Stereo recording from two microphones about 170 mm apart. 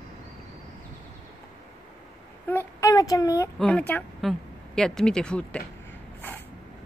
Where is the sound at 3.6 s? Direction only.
5° left (ahead or behind).